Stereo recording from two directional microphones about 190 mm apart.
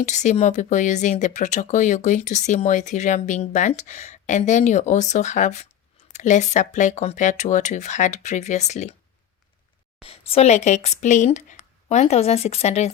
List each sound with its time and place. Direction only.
0.0 s speech: 40° left (ahead or behind)
10.0 s speech: 30° left (ahead or behind)